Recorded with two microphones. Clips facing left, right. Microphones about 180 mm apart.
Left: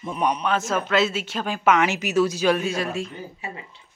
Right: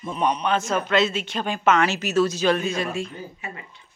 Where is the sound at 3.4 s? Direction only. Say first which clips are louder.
Left 1 dB; 30° left (ahead or behind).